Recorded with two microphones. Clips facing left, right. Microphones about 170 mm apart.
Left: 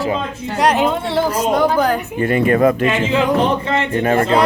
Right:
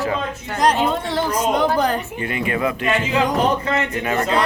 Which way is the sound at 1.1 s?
10° left (ahead or behind).